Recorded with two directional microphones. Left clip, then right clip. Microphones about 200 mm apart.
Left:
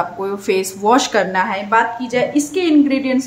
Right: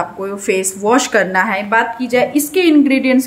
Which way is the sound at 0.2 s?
5° right (ahead or behind).